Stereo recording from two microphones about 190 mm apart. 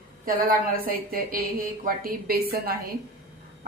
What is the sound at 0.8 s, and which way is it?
A woman's voice, 50° right (ahead or behind).